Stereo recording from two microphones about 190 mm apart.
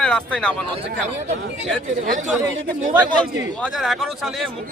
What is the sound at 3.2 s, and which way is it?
A man's voice, centre (ahead or behind).